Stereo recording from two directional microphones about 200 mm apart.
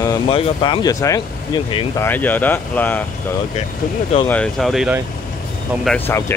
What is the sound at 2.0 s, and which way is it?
Speech, 10° left (ahead or behind).